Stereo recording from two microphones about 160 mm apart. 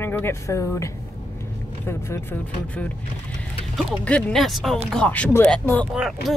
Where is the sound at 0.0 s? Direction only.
15° left (ahead or behind).